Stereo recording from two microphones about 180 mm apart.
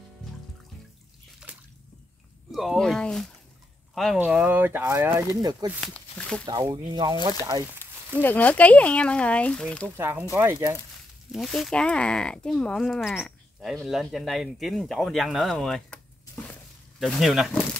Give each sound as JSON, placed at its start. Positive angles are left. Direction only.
{"t": 2.5, "sound": "speech", "side_deg": 0}
{"t": 5.9, "sound": "speech", "side_deg": 5}
{"t": 6.4, "sound": "speech", "side_deg": -25}
{"t": 7.8, "sound": "speech", "side_deg": 10}
{"t": 9.9, "sound": "speech", "side_deg": -10}
{"t": 11.3, "sound": "speech", "side_deg": 0}
{"t": 17.0, "sound": "speech", "side_deg": 0}